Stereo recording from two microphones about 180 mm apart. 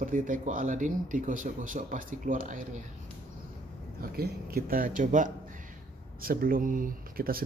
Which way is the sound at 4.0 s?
55° right (ahead or behind).